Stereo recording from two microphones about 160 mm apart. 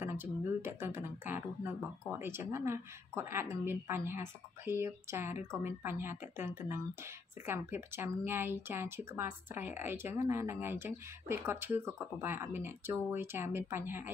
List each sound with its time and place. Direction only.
0.0 s speech: 15° right (ahead or behind)